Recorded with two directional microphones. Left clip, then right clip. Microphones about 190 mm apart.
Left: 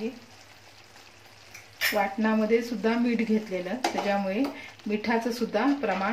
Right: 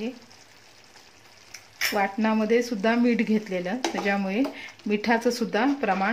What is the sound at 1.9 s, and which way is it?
Speech, 50° right (ahead or behind).